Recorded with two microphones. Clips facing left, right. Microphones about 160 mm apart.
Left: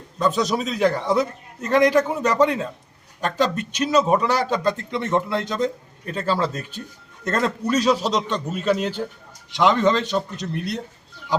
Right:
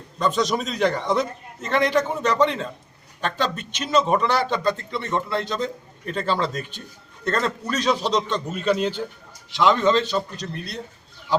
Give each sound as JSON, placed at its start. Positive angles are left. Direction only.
{"t": 0.2, "sound": "a man's voice", "side_deg": 5}